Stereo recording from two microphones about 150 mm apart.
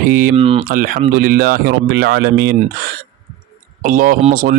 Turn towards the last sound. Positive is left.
turn(degrees=-70)  # may be behind; listen again after turning